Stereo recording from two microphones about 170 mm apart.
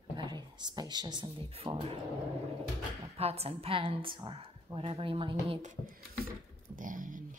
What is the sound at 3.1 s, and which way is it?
A woman's voice, 35° right (ahead or behind).